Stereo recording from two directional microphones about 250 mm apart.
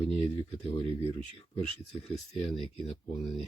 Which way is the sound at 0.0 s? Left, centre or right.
Left.